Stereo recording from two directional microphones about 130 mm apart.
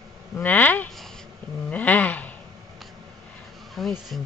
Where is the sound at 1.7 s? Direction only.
10° left (ahead or behind).